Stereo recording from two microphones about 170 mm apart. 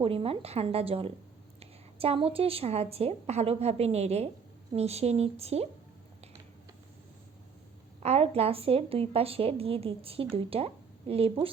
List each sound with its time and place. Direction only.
0.0 s a woman's voice: 35° right (ahead or behind)
8.0 s a woman's voice: 35° right (ahead or behind)